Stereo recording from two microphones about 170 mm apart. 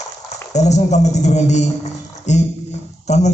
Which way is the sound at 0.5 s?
40° left (ahead or behind).